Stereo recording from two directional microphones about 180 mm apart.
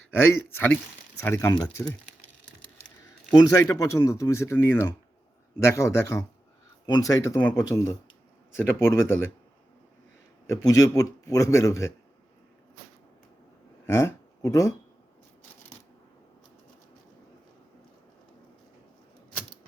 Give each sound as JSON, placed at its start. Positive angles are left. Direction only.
{"t": 0.2, "sound": "a man's voice", "side_deg": 10}
{"t": 3.5, "sound": "a man's voice", "side_deg": 15}
{"t": 10.4, "sound": "a man's voice", "side_deg": 15}
{"t": 13.8, "sound": "speech", "side_deg": 15}